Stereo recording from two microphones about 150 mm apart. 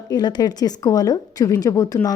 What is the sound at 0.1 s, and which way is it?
A woman's voice, 30° left (ahead or behind).